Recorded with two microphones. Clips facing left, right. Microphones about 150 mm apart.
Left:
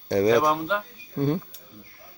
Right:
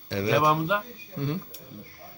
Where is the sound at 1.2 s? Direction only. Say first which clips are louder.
Left 7 dB; 50° left (ahead or behind).